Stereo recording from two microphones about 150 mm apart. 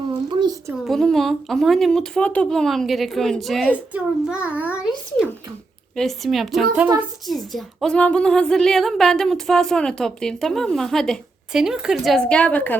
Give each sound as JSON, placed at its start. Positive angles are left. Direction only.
{"t": 0.3, "sound": "a sound", "side_deg": -30}
{"t": 0.9, "sound": "a woman's voice", "side_deg": 0}
{"t": 6.0, "sound": "a woman's voice", "side_deg": 0}